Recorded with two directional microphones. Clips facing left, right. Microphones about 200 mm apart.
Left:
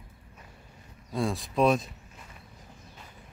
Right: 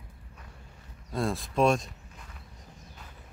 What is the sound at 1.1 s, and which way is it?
Speech, centre (ahead or behind).